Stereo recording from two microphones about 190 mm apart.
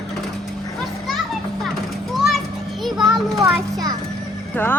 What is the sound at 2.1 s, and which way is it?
Children playing, centre (ahead or behind).